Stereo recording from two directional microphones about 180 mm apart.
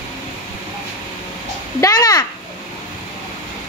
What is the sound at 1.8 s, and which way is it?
Speech, 20° left (ahead or behind).